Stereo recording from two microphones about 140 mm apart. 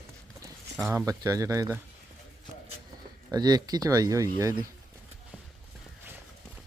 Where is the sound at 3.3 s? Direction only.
30° right (ahead or behind).